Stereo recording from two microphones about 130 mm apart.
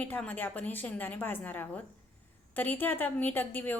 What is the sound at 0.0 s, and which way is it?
A woman's voice, 10° left (ahead or behind).